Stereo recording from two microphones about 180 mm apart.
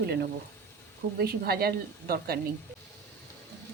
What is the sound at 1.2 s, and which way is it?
A woman's voice, 60° right (ahead or behind).